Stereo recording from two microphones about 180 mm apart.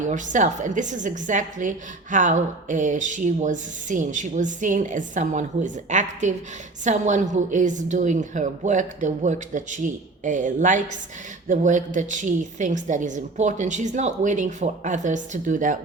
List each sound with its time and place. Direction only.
0.0 s a woman's voice: 45° right (ahead or behind)